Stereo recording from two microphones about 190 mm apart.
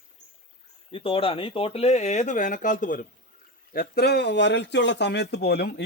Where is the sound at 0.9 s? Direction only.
30° left (ahead or behind).